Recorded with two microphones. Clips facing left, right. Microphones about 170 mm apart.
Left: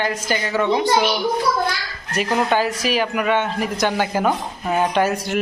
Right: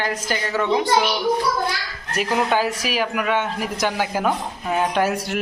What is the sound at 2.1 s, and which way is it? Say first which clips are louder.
Speech: left 1 dB; 5° right (ahead or behind).